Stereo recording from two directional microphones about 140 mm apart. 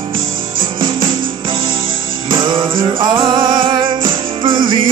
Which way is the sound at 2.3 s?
35° right (ahead or behind).